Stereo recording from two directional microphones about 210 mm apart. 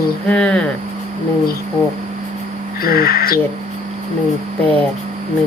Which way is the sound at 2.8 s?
45° left (ahead or behind).